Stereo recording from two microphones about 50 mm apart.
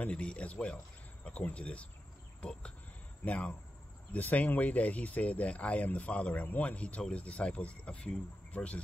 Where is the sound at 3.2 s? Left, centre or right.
Left.